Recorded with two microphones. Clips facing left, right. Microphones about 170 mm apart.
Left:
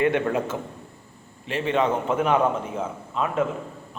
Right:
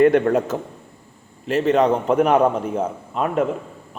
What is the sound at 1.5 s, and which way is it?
A man's voice, 40° right (ahead or behind).